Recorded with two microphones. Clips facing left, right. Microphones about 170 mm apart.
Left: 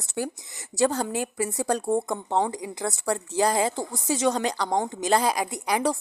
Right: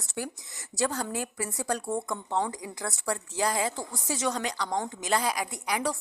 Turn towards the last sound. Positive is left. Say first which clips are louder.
# left 5 dB
turn(degrees=30)  # may be behind; listen again after turning